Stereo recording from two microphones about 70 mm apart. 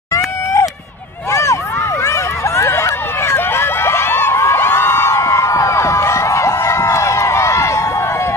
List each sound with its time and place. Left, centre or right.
0.1 s run: left
1.3 s vehicle: left
2.0 s a sound: left